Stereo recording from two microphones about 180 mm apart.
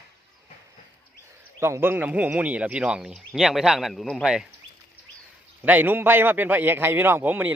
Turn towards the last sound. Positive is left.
turn(degrees=-10)  # may be behind; listen again after turning